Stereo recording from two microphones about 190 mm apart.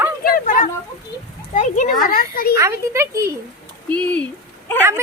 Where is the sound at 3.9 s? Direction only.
5° left (ahead or behind).